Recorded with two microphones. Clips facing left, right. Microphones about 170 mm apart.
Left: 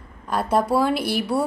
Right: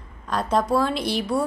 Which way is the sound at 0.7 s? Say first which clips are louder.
Left 2 dB; 5° left (ahead or behind).